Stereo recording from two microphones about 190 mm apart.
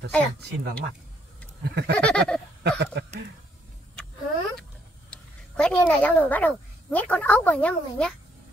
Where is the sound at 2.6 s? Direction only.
65° right (ahead or behind).